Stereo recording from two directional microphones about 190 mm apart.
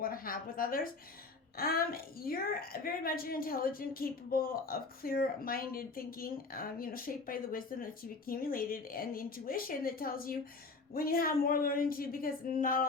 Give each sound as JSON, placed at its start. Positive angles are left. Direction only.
{"t": 0.0, "sound": "a woman's voice", "side_deg": 50}